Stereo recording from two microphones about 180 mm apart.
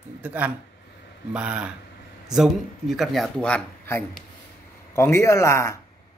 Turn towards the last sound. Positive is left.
turn(degrees=15)  # may be behind; listen again after turning